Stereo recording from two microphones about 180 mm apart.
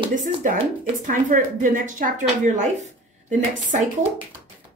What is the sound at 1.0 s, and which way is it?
A woman's voice, 50° right (ahead or behind).